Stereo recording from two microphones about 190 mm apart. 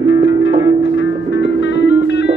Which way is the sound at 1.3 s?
65° left (ahead or behind).